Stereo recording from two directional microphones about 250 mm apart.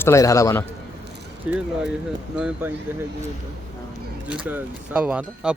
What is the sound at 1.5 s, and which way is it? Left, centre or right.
Speech, centre.